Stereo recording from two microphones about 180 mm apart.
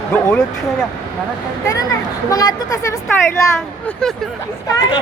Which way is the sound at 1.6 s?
20° left (ahead or behind).